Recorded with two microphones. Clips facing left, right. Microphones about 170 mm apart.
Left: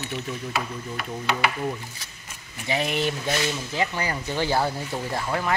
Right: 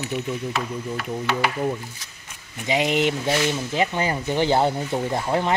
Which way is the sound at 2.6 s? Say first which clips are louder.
Right 4 dB; 15° right (ahead or behind).